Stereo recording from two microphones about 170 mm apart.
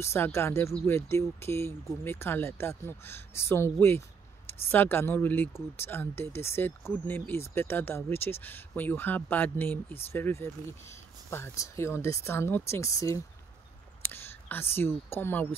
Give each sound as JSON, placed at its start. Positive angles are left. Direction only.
{"t": 0.0, "sound": "speech", "side_deg": 15}